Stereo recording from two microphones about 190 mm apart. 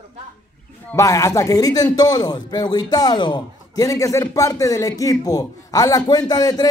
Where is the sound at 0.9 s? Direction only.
15° left (ahead or behind).